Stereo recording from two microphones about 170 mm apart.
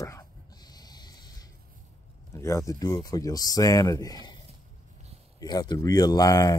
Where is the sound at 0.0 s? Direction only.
20° left (ahead or behind).